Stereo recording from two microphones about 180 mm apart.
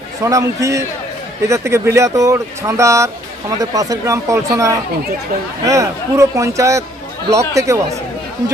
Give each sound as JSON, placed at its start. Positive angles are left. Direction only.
{"t": 0.2, "sound": "speech", "side_deg": -15}